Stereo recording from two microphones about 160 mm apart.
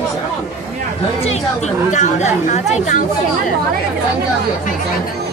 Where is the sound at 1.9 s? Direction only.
45° left (ahead or behind).